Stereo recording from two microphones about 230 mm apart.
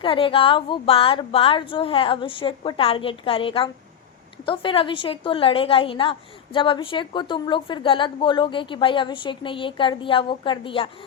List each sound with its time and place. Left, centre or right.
0.0 s a woman's voice: left